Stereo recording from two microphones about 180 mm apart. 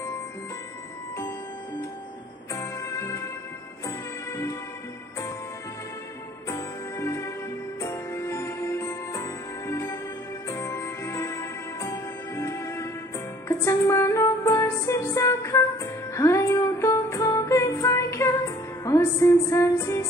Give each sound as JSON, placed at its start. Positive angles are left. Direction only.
{"t": 2.5, "sound": "music", "side_deg": 15}
{"t": 6.5, "sound": "music", "side_deg": 15}